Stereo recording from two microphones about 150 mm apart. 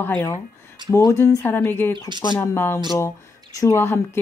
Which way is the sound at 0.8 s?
20° left (ahead or behind).